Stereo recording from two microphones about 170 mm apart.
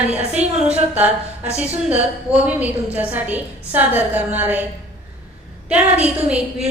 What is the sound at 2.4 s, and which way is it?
A woman's voice, 10° right (ahead or behind).